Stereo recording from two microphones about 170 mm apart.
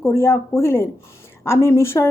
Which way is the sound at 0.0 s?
15° left (ahead or behind).